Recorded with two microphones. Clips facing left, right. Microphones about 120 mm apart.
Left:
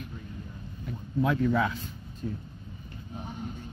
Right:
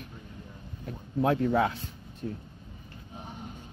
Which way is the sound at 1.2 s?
60° right (ahead or behind).